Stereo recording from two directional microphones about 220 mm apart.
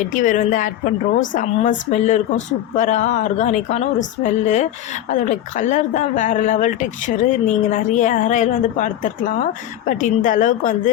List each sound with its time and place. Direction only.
0.0 s a woman's voice: 35° left (ahead or behind)